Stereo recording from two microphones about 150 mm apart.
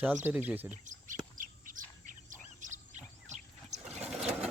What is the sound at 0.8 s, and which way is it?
Chirp, 60° right (ahead or behind).